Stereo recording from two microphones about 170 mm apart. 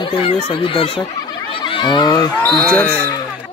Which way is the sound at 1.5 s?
30° left (ahead or behind).